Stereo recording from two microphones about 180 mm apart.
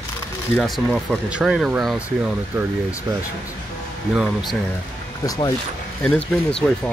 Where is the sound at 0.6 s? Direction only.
Centre (ahead or behind).